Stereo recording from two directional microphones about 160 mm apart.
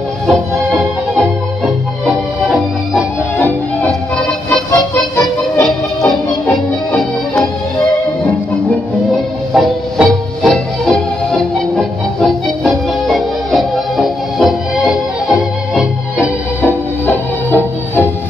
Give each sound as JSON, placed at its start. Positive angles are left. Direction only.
{"t": 0.7, "sound": "music", "side_deg": 0}
{"t": 3.3, "sound": "music", "side_deg": 10}
{"t": 4.2, "sound": "music", "side_deg": 0}
{"t": 4.6, "sound": "music", "side_deg": 20}
{"t": 6.0, "sound": "music", "side_deg": 5}
{"t": 9.5, "sound": "music", "side_deg": 0}
{"t": 17.0, "sound": "music", "side_deg": 10}